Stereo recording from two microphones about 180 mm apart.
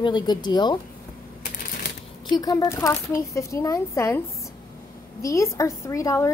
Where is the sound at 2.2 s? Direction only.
20° left (ahead or behind).